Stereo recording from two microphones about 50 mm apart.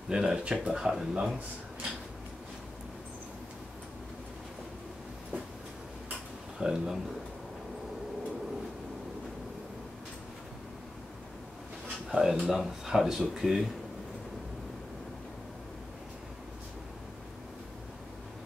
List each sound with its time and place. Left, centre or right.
0.1 s speech: centre
6.6 s speech: centre
12.1 s speech: centre